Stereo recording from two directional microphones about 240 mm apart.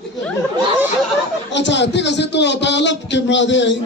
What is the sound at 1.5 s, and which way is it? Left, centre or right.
A man's voice, left.